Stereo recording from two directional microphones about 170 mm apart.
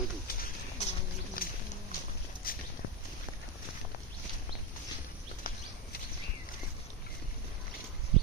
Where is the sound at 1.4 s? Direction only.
55° left (ahead or behind).